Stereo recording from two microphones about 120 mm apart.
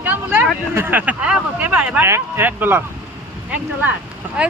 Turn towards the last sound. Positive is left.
turn(degrees=-5)  # may be behind; listen again after turning